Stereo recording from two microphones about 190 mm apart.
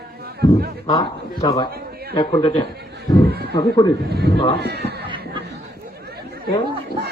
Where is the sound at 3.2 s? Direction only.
55° right (ahead or behind).